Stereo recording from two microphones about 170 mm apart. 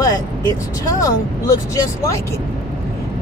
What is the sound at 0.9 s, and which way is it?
Speech, 20° left (ahead or behind).